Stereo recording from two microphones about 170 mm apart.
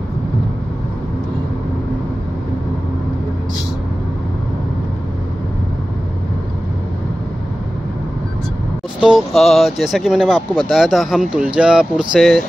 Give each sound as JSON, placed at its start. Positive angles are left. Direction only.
{"t": 9.0, "sound": "speech", "side_deg": 0}